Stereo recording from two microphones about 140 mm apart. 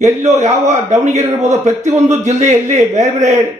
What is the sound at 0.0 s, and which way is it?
A man's voice, 55° right (ahead or behind).